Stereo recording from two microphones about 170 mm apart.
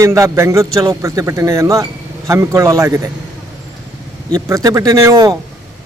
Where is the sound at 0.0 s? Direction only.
15° right (ahead or behind).